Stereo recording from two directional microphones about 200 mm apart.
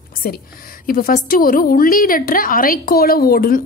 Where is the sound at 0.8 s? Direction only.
45° left (ahead or behind).